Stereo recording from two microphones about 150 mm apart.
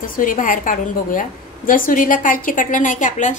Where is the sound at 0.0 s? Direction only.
65° left (ahead or behind).